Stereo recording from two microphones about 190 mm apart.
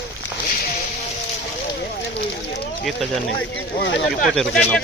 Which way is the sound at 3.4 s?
70° left (ahead or behind).